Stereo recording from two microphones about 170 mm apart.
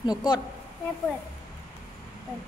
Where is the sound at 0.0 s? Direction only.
25° left (ahead or behind).